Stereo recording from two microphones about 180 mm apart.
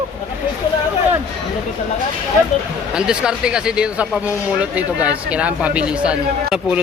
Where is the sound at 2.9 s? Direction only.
5° right (ahead or behind).